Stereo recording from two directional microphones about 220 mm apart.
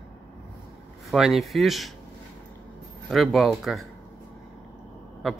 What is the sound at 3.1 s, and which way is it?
Speech, centre (ahead or behind).